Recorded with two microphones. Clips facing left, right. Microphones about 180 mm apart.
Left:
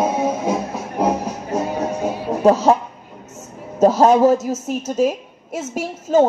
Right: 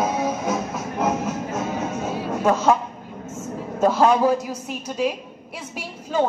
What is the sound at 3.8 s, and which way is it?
A woman's voice, 40° left (ahead or behind).